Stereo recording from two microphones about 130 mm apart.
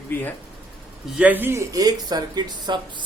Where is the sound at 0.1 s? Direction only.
15° left (ahead or behind).